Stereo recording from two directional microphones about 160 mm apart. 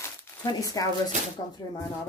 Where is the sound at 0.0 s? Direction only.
20° left (ahead or behind).